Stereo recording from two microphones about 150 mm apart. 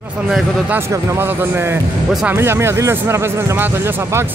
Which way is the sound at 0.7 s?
15° right (ahead or behind).